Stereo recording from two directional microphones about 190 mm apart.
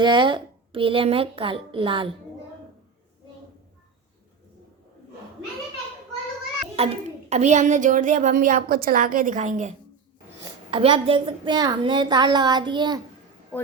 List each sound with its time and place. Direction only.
0.0 s a woman's voice: 25° right (ahead or behind)
6.7 s a woman's voice: 30° right (ahead or behind)
10.7 s a woman's voice: 30° right (ahead or behind)